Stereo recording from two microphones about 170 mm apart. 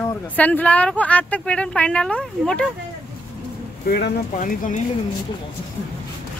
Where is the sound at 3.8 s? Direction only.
65° left (ahead or behind).